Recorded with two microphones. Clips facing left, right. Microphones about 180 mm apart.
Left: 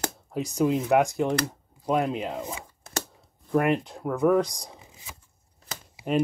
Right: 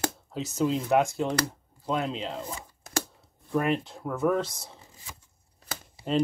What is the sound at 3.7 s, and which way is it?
Speech, 15° left (ahead or behind).